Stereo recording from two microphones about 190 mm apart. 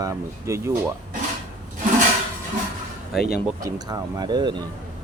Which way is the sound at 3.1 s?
Centre (ahead or behind).